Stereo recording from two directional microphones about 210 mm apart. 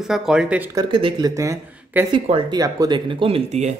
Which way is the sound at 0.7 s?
20° right (ahead or behind).